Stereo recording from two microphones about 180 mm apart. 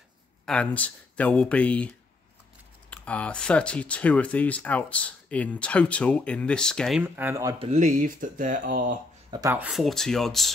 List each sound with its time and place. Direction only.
0.5 s speech: 5° left (ahead or behind)
7.0 s speech: 10° right (ahead or behind)
7.5 s speech: 40° right (ahead or behind)
9.3 s speech: 20° right (ahead or behind)
9.6 s speech: centre (ahead or behind)